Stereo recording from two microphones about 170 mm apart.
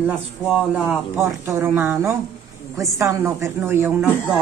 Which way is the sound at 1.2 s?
15° right (ahead or behind).